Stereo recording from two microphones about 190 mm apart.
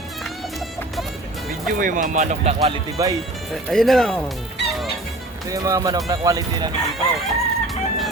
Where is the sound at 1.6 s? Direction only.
45° right (ahead or behind).